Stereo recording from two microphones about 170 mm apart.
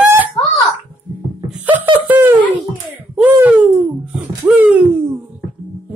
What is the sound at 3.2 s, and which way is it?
Baby cry, 10° right (ahead or behind).